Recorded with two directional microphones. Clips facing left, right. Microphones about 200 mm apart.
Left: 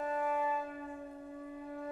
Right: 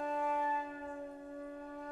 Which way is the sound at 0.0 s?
5° left (ahead or behind).